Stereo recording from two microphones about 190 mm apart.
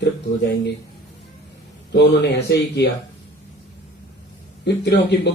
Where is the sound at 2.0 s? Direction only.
65° left (ahead or behind).